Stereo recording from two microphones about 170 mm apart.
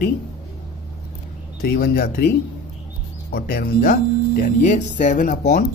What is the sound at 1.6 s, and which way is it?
A woman's voice, 60° left (ahead or behind).